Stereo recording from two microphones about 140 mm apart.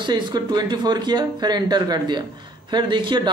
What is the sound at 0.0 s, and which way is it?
Speech, 30° right (ahead or behind).